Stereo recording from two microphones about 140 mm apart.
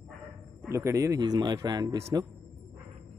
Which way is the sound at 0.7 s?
20° right (ahead or behind).